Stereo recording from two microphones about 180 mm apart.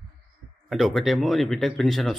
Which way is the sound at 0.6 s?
Centre (ahead or behind).